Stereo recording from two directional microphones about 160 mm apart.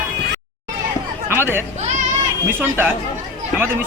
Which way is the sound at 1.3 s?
15° right (ahead or behind).